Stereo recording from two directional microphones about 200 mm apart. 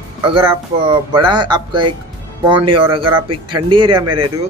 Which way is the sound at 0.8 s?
25° right (ahead or behind).